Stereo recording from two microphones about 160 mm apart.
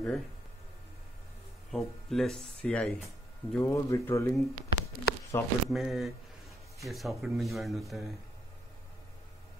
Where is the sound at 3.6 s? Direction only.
20° left (ahead or behind).